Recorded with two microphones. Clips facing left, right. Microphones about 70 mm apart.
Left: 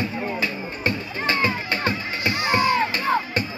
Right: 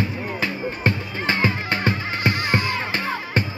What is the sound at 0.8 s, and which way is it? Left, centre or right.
Music, right.